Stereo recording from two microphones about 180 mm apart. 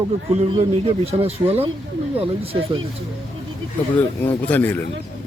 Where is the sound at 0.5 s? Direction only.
30° right (ahead or behind).